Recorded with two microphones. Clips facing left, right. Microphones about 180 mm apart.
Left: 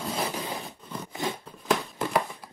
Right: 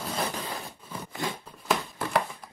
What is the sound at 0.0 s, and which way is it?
Zipper, centre (ahead or behind).